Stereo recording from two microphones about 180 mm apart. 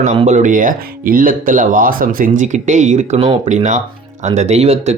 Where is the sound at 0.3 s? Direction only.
45° right (ahead or behind).